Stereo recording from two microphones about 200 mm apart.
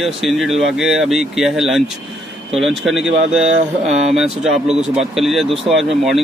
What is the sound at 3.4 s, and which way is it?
Mantra, 35° right (ahead or behind).